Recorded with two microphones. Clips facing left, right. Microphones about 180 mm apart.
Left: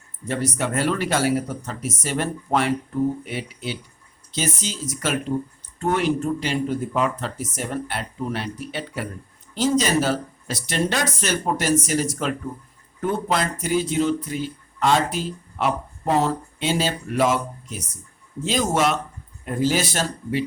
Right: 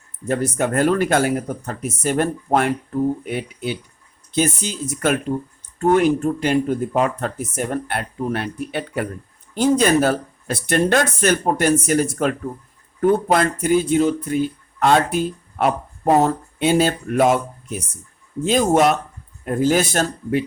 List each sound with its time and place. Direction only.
0.3 s speech: 45° right (ahead or behind)